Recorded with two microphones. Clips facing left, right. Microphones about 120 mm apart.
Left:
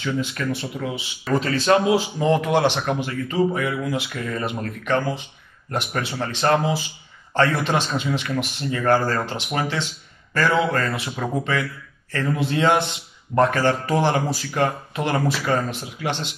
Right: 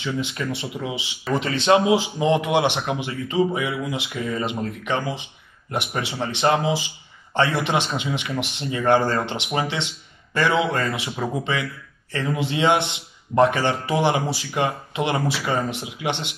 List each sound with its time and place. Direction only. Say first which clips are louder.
0.0 s a man's voice: left 2 dB; 20° right (ahead or behind)